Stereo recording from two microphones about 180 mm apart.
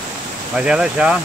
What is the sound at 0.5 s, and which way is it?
Speech, 5° right (ahead or behind).